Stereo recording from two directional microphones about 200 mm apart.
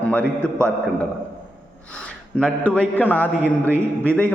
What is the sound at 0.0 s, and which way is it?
A man's voice, 5° left (ahead or behind).